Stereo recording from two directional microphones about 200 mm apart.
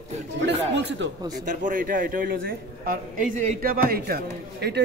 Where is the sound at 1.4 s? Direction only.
40° right (ahead or behind).